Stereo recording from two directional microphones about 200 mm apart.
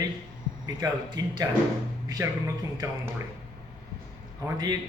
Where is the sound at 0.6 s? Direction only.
20° right (ahead or behind).